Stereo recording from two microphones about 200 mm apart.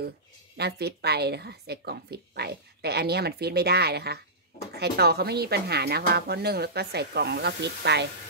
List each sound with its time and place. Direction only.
0.6 s a woman's voice: 55° right (ahead or behind)